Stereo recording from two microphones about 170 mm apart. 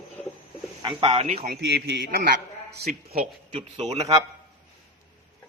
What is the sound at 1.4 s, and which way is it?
Speech, 65° right (ahead or behind).